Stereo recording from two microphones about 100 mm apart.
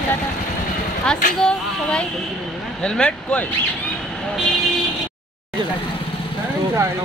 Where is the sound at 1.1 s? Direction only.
10° left (ahead or behind).